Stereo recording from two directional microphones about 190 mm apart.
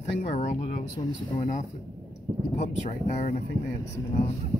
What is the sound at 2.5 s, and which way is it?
Speech, 35° left (ahead or behind).